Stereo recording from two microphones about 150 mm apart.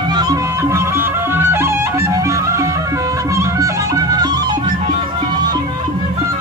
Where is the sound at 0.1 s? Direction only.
25° right (ahead or behind).